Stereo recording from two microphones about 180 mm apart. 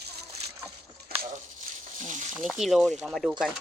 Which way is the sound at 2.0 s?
45° right (ahead or behind).